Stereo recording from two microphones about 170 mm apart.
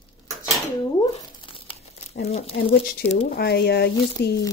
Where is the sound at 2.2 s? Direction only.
40° left (ahead or behind).